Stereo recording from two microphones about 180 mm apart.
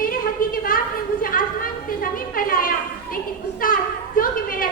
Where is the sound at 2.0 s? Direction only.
50° left (ahead or behind).